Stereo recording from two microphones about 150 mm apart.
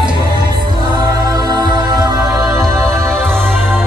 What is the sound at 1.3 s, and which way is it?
Music, 25° right (ahead or behind).